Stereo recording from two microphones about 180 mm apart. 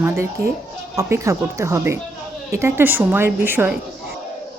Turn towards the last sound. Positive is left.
turn(degrees=-10)  # may be behind; listen again after turning